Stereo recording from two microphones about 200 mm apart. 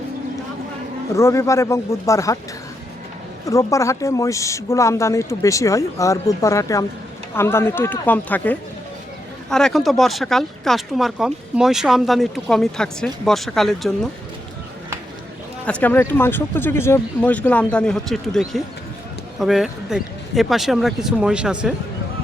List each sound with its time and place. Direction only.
1.1 s speech: 15° left (ahead or behind)
3.4 s speech: 15° left (ahead or behind)
15.6 s speech: 5° left (ahead or behind)